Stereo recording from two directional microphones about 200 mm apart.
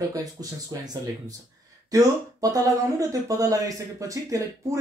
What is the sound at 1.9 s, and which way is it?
Speech, 15° right (ahead or behind).